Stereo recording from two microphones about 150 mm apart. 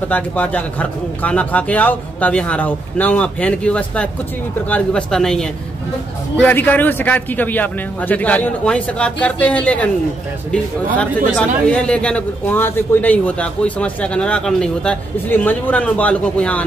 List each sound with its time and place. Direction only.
0.1 s a man's voice: 10° left (ahead or behind)
11.0 s a man's voice: 5° left (ahead or behind)